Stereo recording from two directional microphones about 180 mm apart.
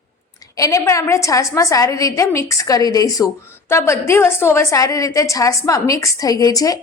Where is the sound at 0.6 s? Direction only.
15° left (ahead or behind).